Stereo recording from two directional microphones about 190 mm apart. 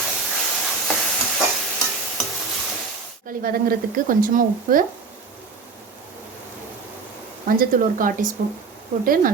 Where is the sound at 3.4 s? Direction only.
50° right (ahead or behind).